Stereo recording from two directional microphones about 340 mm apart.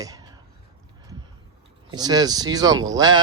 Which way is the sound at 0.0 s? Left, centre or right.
Centre.